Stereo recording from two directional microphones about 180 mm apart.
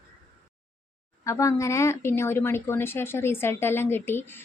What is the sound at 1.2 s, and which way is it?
Speech, 15° left (ahead or behind).